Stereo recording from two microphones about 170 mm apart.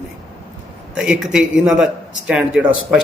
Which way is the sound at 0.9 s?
5° right (ahead or behind).